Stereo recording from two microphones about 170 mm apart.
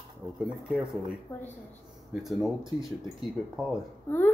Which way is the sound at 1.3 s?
10° left (ahead or behind).